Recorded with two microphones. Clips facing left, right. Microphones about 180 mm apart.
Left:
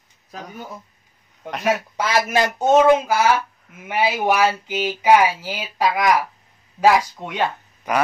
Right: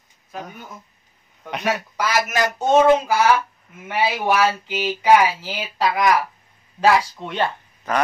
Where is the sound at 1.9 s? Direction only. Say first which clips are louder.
Even; 30° left (ahead or behind).